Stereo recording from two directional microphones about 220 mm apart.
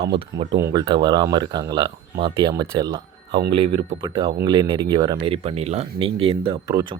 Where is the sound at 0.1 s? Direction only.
20° right (ahead or behind).